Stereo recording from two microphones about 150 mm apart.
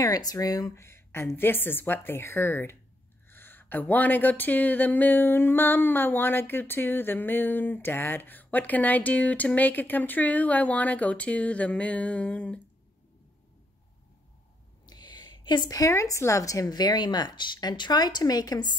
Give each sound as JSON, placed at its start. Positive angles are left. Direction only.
{"t": 0.0, "sound": "a woman's voice", "side_deg": 25}
{"t": 14.9, "sound": "a woman's voice", "side_deg": 25}